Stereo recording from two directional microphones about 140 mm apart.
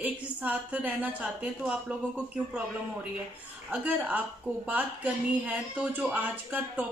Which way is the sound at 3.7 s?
10° right (ahead or behind).